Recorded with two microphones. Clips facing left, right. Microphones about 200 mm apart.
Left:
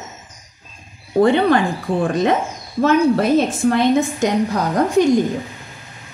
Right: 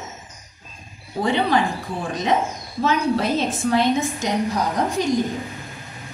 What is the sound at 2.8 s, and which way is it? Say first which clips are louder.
A woman's voice: left 6 dB; 55° left (ahead or behind).